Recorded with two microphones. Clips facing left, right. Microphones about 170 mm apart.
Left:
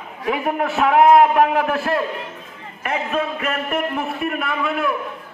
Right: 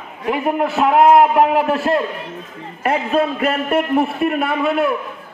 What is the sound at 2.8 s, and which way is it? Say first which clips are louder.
A man's voice: right 5 dB; 35° right (ahead or behind).